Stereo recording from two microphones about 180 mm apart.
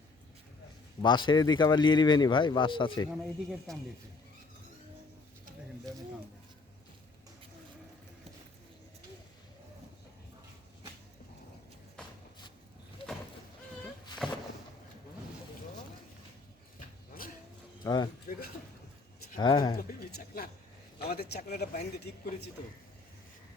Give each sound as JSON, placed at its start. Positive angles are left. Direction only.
{"t": 1.0, "sound": "speech", "side_deg": 25}
{"t": 3.1, "sound": "speech", "side_deg": -5}
{"t": 14.1, "sound": "a sound", "side_deg": 25}
{"t": 17.8, "sound": "a sound", "side_deg": 25}
{"t": 19.4, "sound": "speech", "side_deg": 25}
{"t": 19.7, "sound": "speech", "side_deg": 60}